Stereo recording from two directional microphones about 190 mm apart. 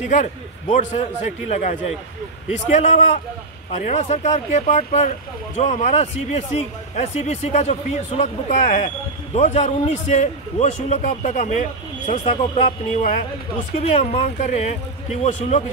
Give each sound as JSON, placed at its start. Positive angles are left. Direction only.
{"t": 0.1, "sound": "a man's voice", "side_deg": 40}
{"t": 2.8, "sound": "a man's voice", "side_deg": 35}